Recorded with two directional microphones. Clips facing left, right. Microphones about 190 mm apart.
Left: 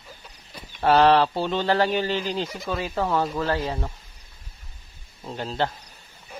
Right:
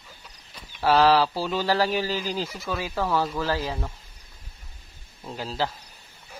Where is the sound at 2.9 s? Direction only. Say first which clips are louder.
Left 1 dB; 15° left (ahead or behind).